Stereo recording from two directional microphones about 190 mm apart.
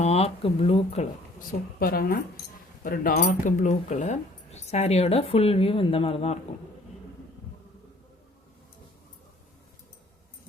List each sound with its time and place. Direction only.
0.0 s speech: 35° left (ahead or behind)
1.8 s speech: 50° left (ahead or behind); by 6.4 s 30° left (ahead or behind)